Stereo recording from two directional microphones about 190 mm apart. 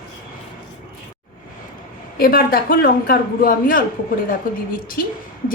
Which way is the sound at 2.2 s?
50° left (ahead or behind).